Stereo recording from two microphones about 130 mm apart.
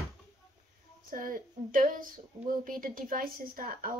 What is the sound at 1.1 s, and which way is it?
A woman's voice, 90° right.